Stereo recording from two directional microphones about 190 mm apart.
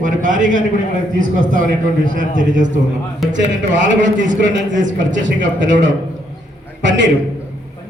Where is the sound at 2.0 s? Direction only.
45° right (ahead or behind).